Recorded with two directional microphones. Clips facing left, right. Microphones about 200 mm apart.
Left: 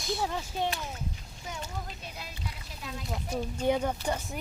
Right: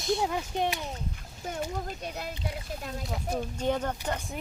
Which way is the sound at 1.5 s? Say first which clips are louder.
Right 6 dB; 50° right (ahead or behind).